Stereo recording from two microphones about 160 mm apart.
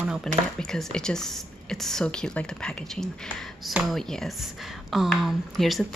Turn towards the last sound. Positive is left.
turn(degrees=0)  # may be behind; listen again after turning